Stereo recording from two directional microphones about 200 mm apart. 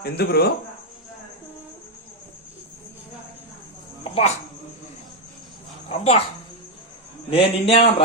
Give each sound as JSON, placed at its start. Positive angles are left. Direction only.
{"t": 0.0, "sound": "speech", "side_deg": 50}
{"t": 4.0, "sound": "insect", "side_deg": 30}
{"t": 5.9, "sound": "speech", "side_deg": 30}
{"t": 7.3, "sound": "a man's voice", "side_deg": 30}